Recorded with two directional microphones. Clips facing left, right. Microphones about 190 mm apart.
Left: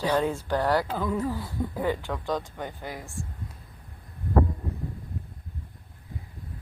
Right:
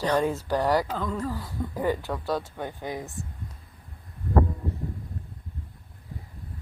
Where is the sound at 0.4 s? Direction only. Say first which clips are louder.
Right 1 dB; 10° right (ahead or behind).